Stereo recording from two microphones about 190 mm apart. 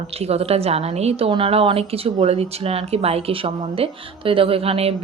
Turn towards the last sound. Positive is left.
turn(degrees=-30)  # may be behind; listen again after turning